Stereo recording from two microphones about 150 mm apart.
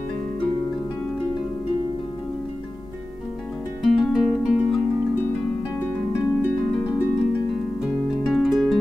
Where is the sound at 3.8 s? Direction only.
Centre (ahead or behind).